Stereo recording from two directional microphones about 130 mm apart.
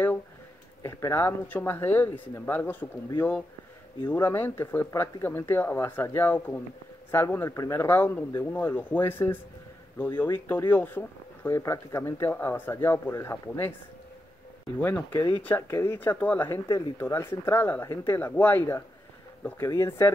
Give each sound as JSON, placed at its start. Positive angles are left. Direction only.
{"t": 0.8, "sound": "speech", "side_deg": 20}
{"t": 14.8, "sound": "speech", "side_deg": 15}
{"t": 16.6, "sound": "speech", "side_deg": 30}
{"t": 17.0, "sound": "speech", "side_deg": 15}